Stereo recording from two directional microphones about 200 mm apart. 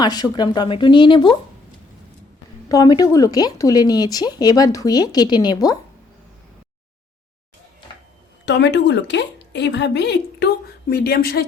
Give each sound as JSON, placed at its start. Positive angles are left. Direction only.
{"t": 0.0, "sound": "speech", "side_deg": 20}
{"t": 2.6, "sound": "speech", "side_deg": 20}
{"t": 8.4, "sound": "a woman's voice", "side_deg": 60}